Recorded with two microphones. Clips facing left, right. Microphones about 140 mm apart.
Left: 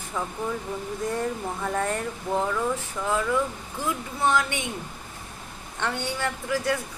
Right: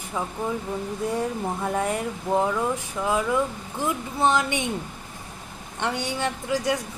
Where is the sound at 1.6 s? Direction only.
10° right (ahead or behind).